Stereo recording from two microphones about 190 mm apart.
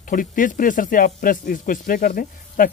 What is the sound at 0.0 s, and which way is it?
Speech, 45° left (ahead or behind).